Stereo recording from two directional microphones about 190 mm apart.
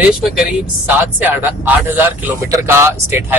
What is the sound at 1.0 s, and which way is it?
A man's voice, 10° right (ahead or behind).